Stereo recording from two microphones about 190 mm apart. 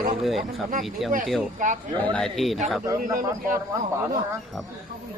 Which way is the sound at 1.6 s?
40° right (ahead or behind).